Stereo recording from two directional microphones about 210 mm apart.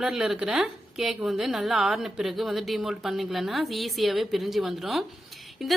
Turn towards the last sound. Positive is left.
turn(degrees=0)  # may be behind; listen again after turning